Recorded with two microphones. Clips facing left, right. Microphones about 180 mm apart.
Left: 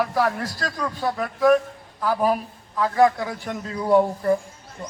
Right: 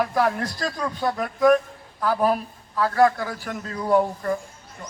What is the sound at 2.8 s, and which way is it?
A man's voice, 15° left (ahead or behind).